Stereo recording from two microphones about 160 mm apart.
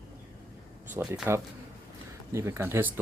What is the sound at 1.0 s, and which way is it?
Speech, 20° right (ahead or behind).